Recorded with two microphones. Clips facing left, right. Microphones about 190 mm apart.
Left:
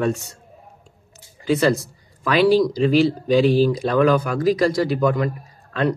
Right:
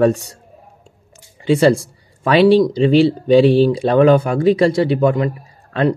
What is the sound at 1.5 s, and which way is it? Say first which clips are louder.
Speech: right 5 dB; 30° right (ahead or behind).